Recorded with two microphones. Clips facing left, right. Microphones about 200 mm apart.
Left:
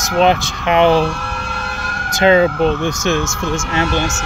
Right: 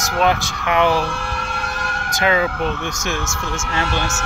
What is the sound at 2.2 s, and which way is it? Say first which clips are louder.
Speech: left 7 dB; 30° left (ahead or behind).